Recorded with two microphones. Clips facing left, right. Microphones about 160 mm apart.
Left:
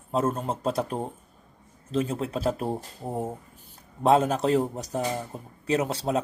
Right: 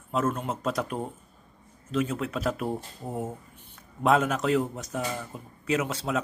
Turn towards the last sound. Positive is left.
turn(degrees=35)  # may be behind; listen again after turning